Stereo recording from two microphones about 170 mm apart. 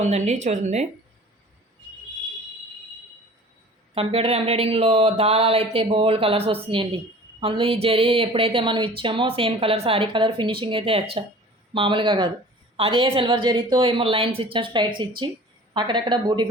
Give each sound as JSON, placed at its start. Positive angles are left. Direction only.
{"t": 0.0, "sound": "speech", "side_deg": -45}
{"t": 3.9, "sound": "a woman's voice", "side_deg": -35}